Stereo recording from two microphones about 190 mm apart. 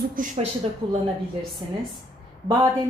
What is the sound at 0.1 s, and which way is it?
Speech, 45° right (ahead or behind).